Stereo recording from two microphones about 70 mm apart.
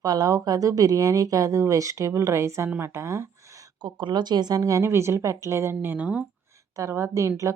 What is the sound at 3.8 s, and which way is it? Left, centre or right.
Speech, right.